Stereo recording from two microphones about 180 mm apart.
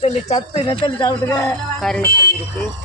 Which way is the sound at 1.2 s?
15° left (ahead or behind).